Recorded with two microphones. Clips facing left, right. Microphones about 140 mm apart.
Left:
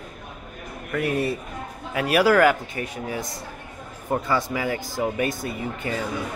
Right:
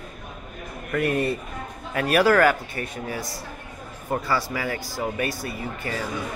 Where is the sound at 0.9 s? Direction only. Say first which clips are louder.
Right 1 dB; 5° left (ahead or behind); by 6.1 s 20° left (ahead or behind).